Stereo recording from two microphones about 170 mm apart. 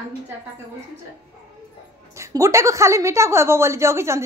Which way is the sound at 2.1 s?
15° right (ahead or behind).